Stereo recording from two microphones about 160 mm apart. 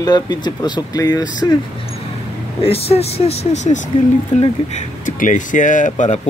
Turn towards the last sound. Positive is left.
turn(degrees=50)  # may be behind; listen again after turning